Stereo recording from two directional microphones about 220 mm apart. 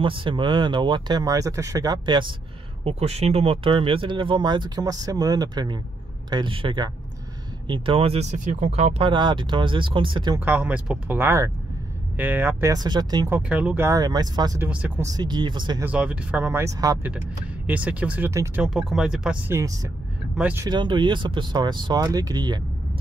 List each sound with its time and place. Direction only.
0.0 s speech: 25° right (ahead or behind)
10.4 s speech: 5° right (ahead or behind)
13.4 s speech: 5° right (ahead or behind)
15.8 s speech: 5° right (ahead or behind)
20.6 s speech: 20° right (ahead or behind)